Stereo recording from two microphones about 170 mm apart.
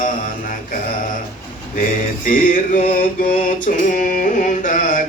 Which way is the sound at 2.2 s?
55° left (ahead or behind).